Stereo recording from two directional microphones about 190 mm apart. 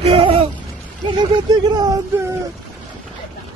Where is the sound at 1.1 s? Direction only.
20° right (ahead or behind).